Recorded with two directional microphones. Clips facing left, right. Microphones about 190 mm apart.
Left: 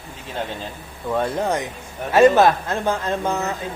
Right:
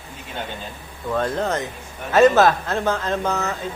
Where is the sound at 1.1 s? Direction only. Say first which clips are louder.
Left 1 dB; 10° left (ahead or behind).